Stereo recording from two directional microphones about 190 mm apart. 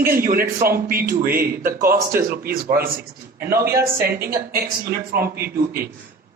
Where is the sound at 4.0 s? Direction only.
55° right (ahead or behind).